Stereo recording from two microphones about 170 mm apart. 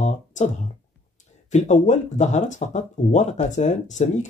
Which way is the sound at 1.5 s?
45° left (ahead or behind).